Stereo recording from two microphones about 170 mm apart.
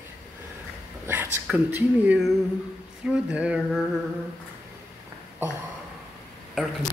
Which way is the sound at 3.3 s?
5° right (ahead or behind).